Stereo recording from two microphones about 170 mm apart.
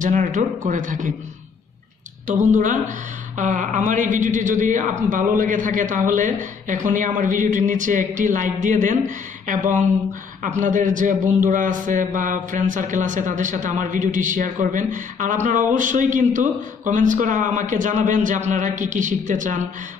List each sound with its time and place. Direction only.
0.0 s a man's voice: 45° right (ahead or behind)
2.3 s a man's voice: 45° right (ahead or behind)